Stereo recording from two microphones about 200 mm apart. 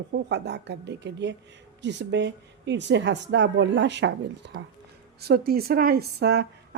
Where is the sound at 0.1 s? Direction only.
60° right (ahead or behind).